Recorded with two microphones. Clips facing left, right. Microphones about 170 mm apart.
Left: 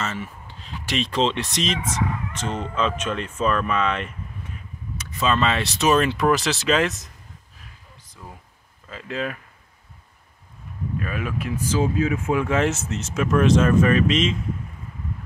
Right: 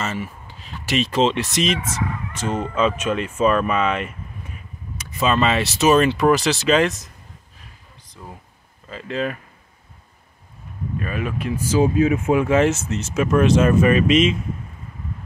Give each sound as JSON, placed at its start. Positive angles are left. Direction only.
{"t": 0.0, "sound": "speech", "side_deg": -10}
{"t": 8.9, "sound": "speech", "side_deg": 0}
{"t": 11.0, "sound": "speech", "side_deg": 0}
{"t": 11.7, "sound": "speech", "side_deg": -15}
{"t": 12.4, "sound": "speech", "side_deg": 0}